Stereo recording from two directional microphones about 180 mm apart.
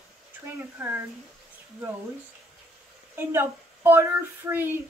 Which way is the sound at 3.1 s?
10° right (ahead or behind).